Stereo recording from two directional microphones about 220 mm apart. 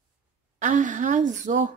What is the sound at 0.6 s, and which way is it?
A woman's voice, 35° right (ahead or behind).